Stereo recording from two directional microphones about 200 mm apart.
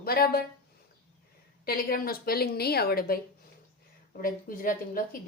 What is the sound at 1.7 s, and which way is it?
Speech, 45° left (ahead or behind).